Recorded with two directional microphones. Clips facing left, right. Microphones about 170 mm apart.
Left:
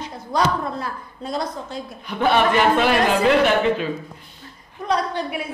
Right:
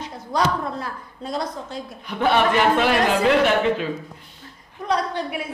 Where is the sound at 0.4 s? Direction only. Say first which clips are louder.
Left 1 dB; 25° left (ahead or behind).